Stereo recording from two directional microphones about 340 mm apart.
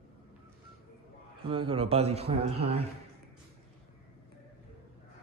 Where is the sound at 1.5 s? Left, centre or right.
Centre.